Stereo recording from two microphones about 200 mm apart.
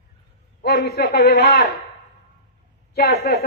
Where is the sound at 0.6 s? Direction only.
55° left (ahead or behind).